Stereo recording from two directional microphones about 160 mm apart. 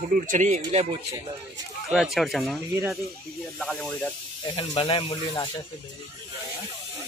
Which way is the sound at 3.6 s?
5° left (ahead or behind).